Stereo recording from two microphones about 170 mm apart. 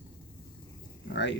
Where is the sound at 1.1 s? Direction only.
90° left.